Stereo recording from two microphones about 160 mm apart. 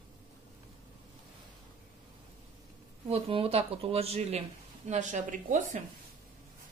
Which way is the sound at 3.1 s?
35° right (ahead or behind).